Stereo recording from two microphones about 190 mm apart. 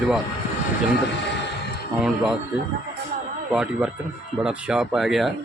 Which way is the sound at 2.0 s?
5° right (ahead or behind).